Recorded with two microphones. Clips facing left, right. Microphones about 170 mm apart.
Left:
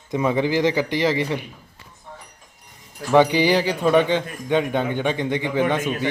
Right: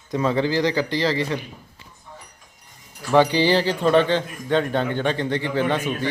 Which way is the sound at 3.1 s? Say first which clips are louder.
Left 1 dB; 15° left (ahead or behind).